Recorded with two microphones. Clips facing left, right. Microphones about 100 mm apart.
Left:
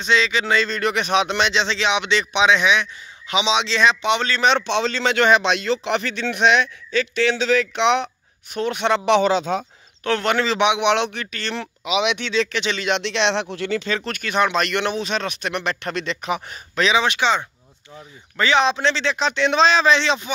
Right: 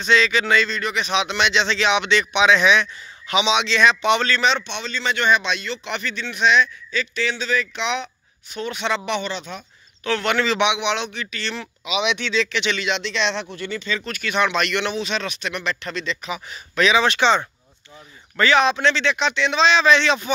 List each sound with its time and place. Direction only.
0.0 s speech: 20° left (ahead or behind)
0.7 s speech: 55° left (ahead or behind); by 4.4 s 20° left (ahead or behind)
4.6 s speech: 90° left; by 9.0 s 55° left (ahead or behind)
10.0 s speech: 40° left (ahead or behind)
10.8 s a man's voice: 60° left (ahead or behind)
11.5 s speech: 60° left (ahead or behind)
12.4 s speech: 45° left (ahead or behind)
12.9 s speech: 65° left (ahead or behind)
14.2 s speech: 40° left (ahead or behind); by 16.5 s 55° left (ahead or behind)
16.7 s speech: 25° left (ahead or behind)
17.0 s speech: 10° left (ahead or behind)
18.4 s speech: 25° left (ahead or behind)